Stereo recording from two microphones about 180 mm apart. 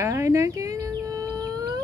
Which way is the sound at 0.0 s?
15° right (ahead or behind).